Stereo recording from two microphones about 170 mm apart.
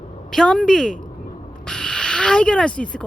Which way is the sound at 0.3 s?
5° left (ahead or behind).